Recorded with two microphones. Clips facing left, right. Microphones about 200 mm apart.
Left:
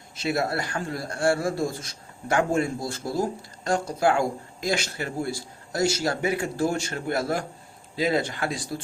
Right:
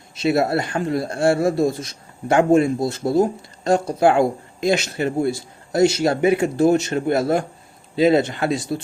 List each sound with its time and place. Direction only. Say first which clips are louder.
0.2 s speech: right 7 dB; 25° right (ahead or behind)